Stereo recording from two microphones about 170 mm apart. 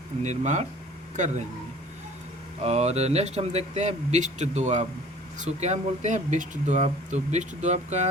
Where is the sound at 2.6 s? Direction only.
40° right (ahead or behind).